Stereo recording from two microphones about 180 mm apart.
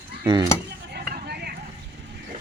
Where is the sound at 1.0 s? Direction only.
60° right (ahead or behind).